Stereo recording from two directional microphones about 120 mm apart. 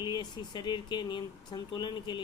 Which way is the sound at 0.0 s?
35° left (ahead or behind).